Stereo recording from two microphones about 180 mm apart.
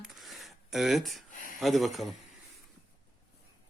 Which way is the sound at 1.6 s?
Centre (ahead or behind).